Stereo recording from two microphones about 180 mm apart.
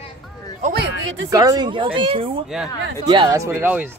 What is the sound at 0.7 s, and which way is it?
Speech, 70° right (ahead or behind).